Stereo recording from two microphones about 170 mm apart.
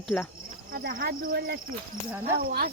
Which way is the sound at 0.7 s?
60° right (ahead or behind).